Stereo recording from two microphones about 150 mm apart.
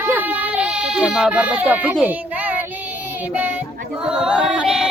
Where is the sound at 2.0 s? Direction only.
10° right (ahead or behind).